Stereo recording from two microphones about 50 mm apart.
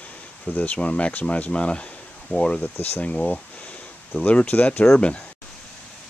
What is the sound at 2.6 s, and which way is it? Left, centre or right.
Speech, left.